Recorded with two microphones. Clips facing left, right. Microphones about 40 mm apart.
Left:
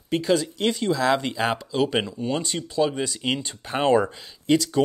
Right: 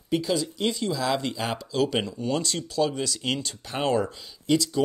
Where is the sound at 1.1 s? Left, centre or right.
Left.